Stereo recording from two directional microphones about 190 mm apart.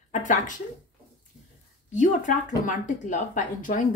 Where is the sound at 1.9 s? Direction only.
40° left (ahead or behind).